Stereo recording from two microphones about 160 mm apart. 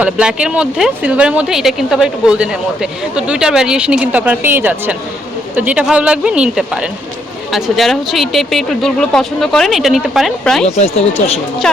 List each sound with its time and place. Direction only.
0.0 s speech: 5° right (ahead or behind)
10.7 s speech: 40° left (ahead or behind)
11.6 s speech: 5° left (ahead or behind)